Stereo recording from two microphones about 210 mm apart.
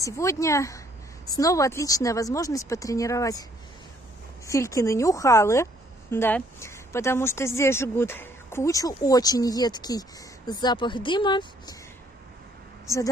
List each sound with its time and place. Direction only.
0.0 s a woman's voice: 15° left (ahead or behind)
4.5 s a woman's voice: 15° left (ahead or behind)
12.8 s speech: 15° left (ahead or behind)